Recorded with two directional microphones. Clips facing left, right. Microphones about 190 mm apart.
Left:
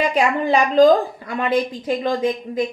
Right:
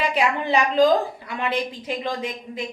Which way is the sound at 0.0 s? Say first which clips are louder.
Left 4 dB; 45° left (ahead or behind).